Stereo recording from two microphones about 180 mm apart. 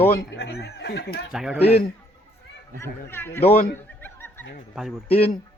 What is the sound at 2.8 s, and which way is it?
Speech, 10° left (ahead or behind).